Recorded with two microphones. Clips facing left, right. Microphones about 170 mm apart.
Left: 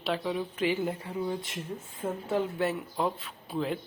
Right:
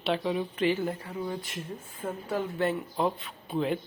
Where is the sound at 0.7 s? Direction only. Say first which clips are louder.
Right 1 dB; 20° left (ahead or behind).